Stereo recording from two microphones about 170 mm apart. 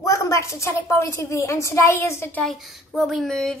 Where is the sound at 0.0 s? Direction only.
15° left (ahead or behind).